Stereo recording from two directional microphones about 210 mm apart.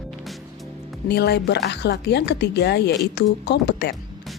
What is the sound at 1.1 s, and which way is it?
A woman's voice, 50° left (ahead or behind).